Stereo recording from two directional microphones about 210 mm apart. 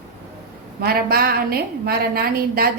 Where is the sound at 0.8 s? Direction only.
45° right (ahead or behind).